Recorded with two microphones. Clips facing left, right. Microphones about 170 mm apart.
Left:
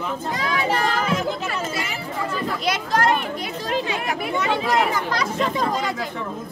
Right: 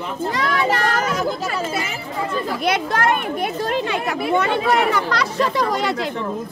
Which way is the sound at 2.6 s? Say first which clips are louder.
Right 2 dB; 60° right (ahead or behind).